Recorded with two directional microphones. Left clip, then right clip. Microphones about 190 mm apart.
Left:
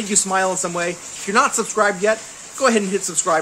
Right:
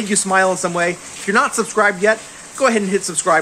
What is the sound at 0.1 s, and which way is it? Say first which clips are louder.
Speech: right 4 dB; centre (ahead or behind).